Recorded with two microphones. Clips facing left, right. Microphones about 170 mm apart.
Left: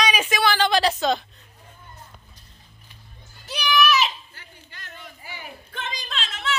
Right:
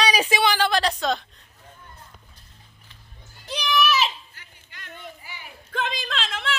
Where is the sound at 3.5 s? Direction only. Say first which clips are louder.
Left 1 dB; 20° right (ahead or behind).